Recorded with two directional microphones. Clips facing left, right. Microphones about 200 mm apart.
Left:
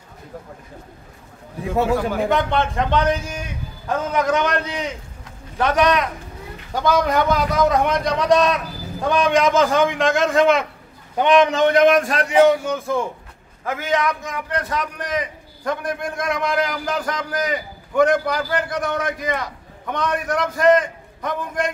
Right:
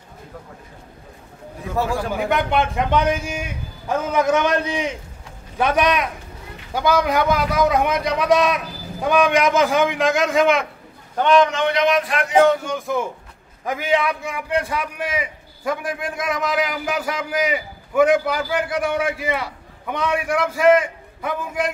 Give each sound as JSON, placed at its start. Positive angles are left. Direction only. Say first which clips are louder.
{"t": 2.1, "sound": "a man's voice", "louder": "left 1 dB", "side_deg": -5}
{"t": 11.1, "sound": "a man's voice", "louder": "even", "side_deg": 15}
{"t": 11.4, "sound": "speech", "louder": "left 4 dB", "side_deg": 40}
{"t": 12.4, "sound": "a man's voice", "louder": "left 2 dB", "side_deg": 5}
{"t": 13.7, "sound": "a man's voice", "louder": "right 1 dB", "side_deg": -15}